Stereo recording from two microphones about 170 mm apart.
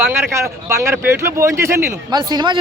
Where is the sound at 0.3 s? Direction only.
15° right (ahead or behind).